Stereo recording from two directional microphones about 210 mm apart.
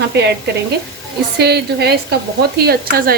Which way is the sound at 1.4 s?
50° right (ahead or behind).